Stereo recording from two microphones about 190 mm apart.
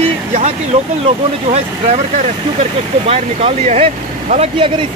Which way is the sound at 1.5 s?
35° right (ahead or behind).